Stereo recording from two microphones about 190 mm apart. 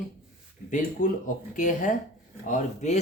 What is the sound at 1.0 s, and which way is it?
Speech, 45° left (ahead or behind).